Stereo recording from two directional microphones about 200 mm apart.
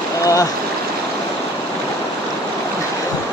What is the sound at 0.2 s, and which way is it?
Stream, 15° left (ahead or behind).